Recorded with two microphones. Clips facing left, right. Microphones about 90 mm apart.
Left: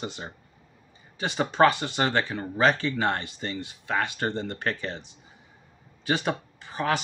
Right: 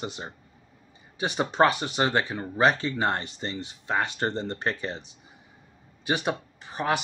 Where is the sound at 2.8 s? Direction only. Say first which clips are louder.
Even; 30° right (ahead or behind).